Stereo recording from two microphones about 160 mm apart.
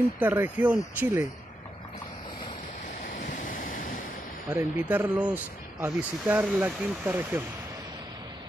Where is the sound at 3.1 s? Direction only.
55° left (ahead or behind).